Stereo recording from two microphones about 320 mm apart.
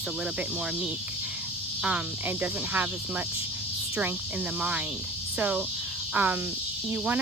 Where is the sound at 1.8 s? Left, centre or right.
Centre.